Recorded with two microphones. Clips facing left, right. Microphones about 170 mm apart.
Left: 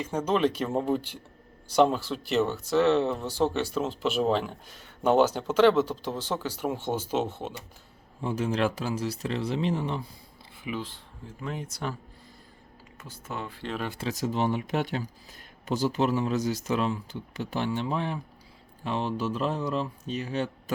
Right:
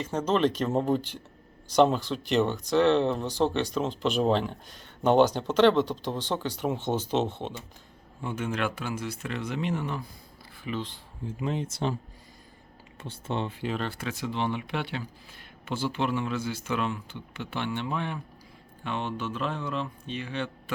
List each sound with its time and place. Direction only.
0.0 s speech: 10° left (ahead or behind)
8.2 s a man's voice: 35° left (ahead or behind)
10.6 s speech: 10° left (ahead or behind)
11.3 s speech: 20° right (ahead or behind)
13.0 s speech: 30° right (ahead or behind)
14.1 s a man's voice: 40° left (ahead or behind)